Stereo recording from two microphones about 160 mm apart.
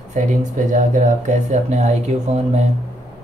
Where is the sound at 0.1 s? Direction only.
50° right (ahead or behind).